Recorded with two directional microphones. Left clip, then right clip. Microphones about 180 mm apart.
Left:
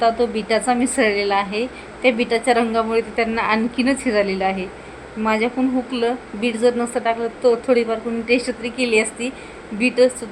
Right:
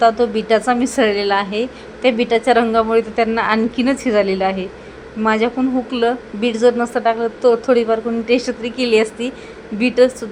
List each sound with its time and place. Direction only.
0.0 s a woman's voice: 25° right (ahead or behind)